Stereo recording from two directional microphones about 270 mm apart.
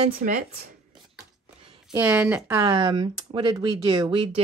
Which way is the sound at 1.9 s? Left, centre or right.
Centre.